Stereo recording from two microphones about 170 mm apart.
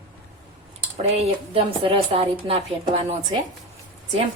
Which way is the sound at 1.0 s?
35° right (ahead or behind).